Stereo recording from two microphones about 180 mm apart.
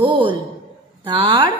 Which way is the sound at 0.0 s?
25° right (ahead or behind).